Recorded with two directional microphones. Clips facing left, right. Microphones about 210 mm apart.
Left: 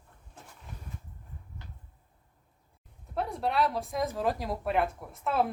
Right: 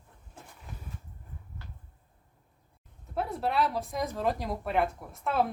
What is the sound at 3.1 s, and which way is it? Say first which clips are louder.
Speech: even; centre (ahead or behind).